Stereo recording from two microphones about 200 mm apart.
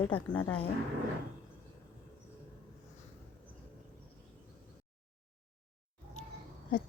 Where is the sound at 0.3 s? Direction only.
15° left (ahead or behind).